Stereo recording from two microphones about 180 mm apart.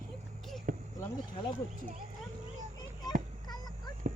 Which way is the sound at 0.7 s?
50° right (ahead or behind).